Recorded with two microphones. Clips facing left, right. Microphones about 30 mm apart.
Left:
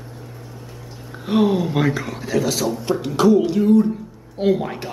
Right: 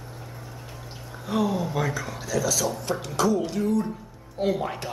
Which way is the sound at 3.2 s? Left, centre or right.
Left.